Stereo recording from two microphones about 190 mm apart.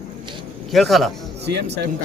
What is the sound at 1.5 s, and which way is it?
Speech, 60° right (ahead or behind).